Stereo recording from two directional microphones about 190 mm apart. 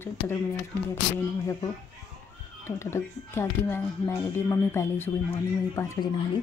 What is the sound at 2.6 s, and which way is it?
Speech, 15° left (ahead or behind).